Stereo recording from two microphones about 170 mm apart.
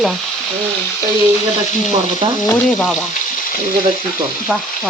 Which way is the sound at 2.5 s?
Centre (ahead or behind).